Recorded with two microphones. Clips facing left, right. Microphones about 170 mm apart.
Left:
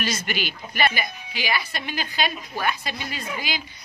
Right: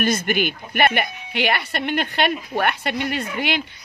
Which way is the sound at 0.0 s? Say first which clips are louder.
Right 7 dB; 55° right (ahead or behind).